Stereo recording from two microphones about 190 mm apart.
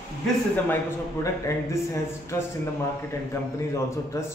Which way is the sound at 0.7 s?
15° left (ahead or behind).